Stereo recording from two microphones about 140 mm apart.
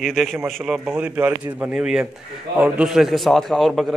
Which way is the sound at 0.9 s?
10° right (ahead or behind).